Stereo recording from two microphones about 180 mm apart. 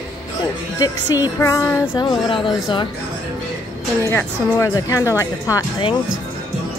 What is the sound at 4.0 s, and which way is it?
A woman's voice, 15° left (ahead or behind).